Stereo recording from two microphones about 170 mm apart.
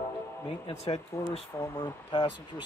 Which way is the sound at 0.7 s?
40° left (ahead or behind).